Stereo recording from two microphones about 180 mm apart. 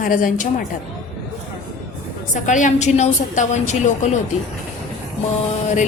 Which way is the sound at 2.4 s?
45° left (ahead or behind).